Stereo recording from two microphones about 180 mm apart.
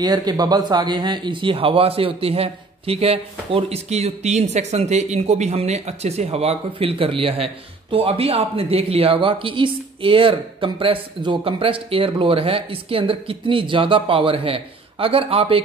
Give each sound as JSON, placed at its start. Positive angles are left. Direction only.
{"t": 0.0, "sound": "speech", "side_deg": -20}